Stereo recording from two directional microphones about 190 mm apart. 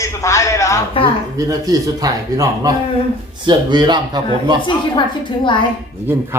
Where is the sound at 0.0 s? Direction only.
15° left (ahead or behind).